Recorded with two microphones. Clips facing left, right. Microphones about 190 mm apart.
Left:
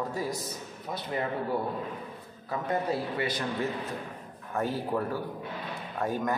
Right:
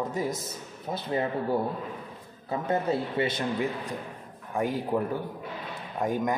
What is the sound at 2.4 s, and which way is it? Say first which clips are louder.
A man's voice: right 3 dB; 25° right (ahead or behind).